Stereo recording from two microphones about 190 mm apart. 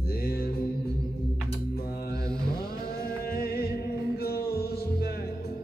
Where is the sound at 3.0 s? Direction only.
50° left (ahead or behind).